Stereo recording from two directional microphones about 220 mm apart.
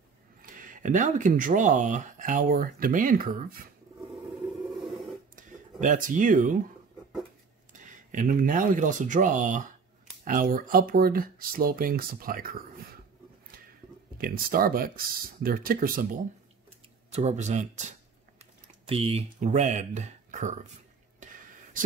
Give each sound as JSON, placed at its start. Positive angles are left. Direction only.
{"t": 0.4, "sound": "speech", "side_deg": -40}
{"t": 4.7, "sound": "a sound", "side_deg": 0}
{"t": 5.3, "sound": "speech", "side_deg": -35}
{"t": 7.7, "sound": "speech", "side_deg": -35}
{"t": 14.1, "sound": "speech", "side_deg": -40}
{"t": 21.2, "sound": "a sound", "side_deg": -35}